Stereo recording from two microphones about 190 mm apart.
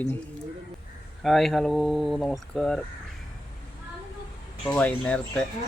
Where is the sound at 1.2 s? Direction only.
Centre (ahead or behind).